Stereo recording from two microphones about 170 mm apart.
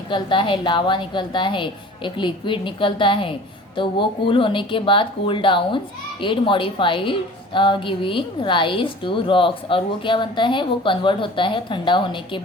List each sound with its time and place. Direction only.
0.1 s a woman's voice: 30° left (ahead or behind)